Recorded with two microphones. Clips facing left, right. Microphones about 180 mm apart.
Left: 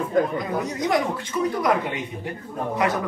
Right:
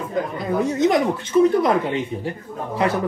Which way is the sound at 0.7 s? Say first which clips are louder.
Right 7 dB; 25° right (ahead or behind).